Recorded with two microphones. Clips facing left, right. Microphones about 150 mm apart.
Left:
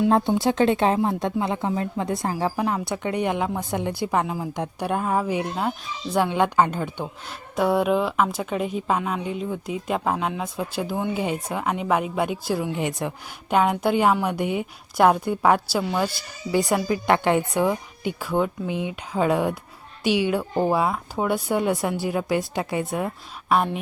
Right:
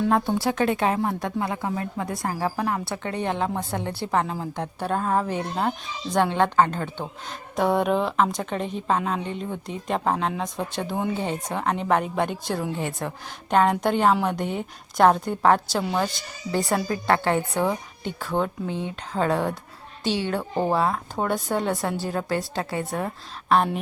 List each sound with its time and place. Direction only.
0.1 s a woman's voice: 20° left (ahead or behind); by 23.8 s 5° left (ahead or behind)